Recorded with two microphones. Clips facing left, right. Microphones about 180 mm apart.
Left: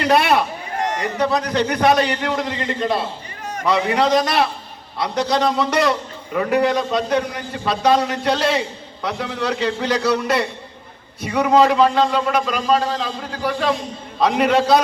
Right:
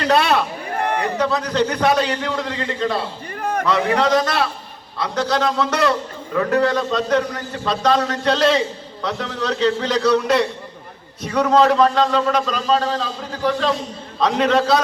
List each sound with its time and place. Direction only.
0.0 s speech: 15° left (ahead or behind)
0.8 s a sound: 55° right (ahead or behind)
1.2 s a man's voice: 15° left (ahead or behind)